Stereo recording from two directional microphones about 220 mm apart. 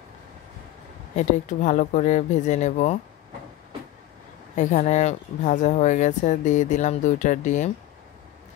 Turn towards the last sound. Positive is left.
turn(degrees=35)  # may be behind; listen again after turning